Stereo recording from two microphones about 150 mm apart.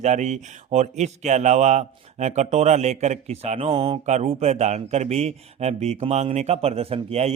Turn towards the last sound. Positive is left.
turn(degrees=-45)  # may be behind; listen again after turning